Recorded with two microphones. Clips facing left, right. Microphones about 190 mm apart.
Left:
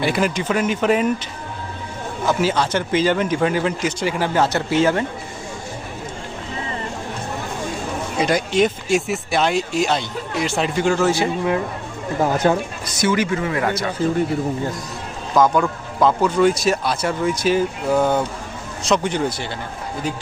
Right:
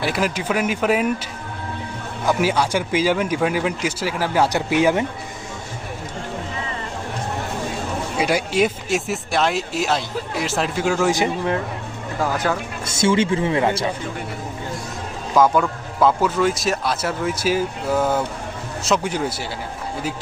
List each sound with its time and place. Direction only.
0.0 s a man's voice: centre (ahead or behind)
2.2 s a man's voice: 10° right (ahead or behind)
4.4 s a man's voice: 15° right (ahead or behind)
8.2 s speech: 5° right (ahead or behind)
12.2 s speech: 20° left (ahead or behind)
12.8 s speech: 25° right (ahead or behind)
15.4 s speech: 5° right (ahead or behind)